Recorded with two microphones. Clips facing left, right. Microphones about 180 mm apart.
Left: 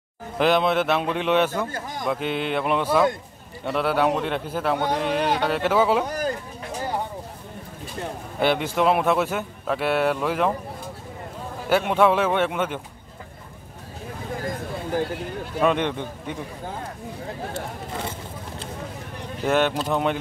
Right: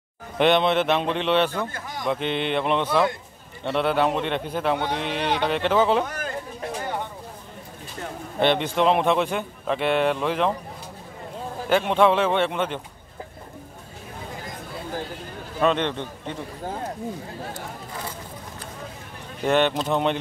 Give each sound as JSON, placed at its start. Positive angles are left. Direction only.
{"t": 0.4, "sound": "a man's voice", "side_deg": 0}
{"t": 1.7, "sound": "a man's voice", "side_deg": 40}
{"t": 2.0, "sound": "a man's voice", "side_deg": 5}
{"t": 4.9, "sound": "speech", "side_deg": 45}
{"t": 5.4, "sound": "a man's voice", "side_deg": 5}
{"t": 6.0, "sound": "a sound", "side_deg": 35}
{"t": 8.4, "sound": "a man's voice", "side_deg": 5}
{"t": 11.7, "sound": "a man's voice", "side_deg": 5}
{"t": 15.6, "sound": "a man's voice", "side_deg": 10}
{"t": 19.4, "sound": "a man's voice", "side_deg": 5}